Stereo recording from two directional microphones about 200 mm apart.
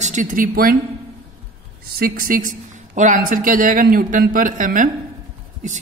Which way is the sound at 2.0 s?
45° right (ahead or behind).